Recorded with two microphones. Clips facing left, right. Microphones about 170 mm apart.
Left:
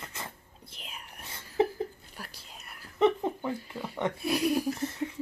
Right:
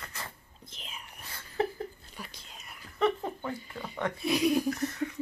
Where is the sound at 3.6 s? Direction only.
5° left (ahead or behind).